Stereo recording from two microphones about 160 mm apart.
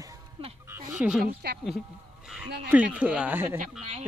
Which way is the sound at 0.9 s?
5° right (ahead or behind).